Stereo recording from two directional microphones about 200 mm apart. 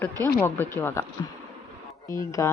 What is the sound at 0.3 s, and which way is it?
Speech, 10° left (ahead or behind).